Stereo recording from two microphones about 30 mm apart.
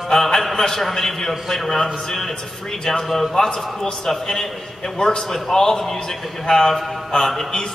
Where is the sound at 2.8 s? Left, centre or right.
Centre.